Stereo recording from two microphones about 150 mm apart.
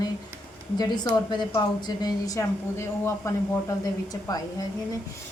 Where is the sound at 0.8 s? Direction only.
30° left (ahead or behind).